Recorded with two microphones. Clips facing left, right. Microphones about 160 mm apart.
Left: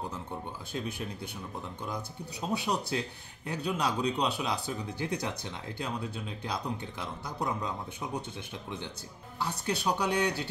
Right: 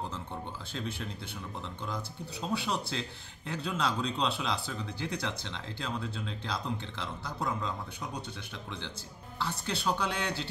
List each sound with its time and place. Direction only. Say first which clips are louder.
0.3 s speech: left 2 dB; 15° left (ahead or behind)
2.5 s speech: left 2 dB; 20° left (ahead or behind)
9.4 s speech: left 2 dB; 15° left (ahead or behind)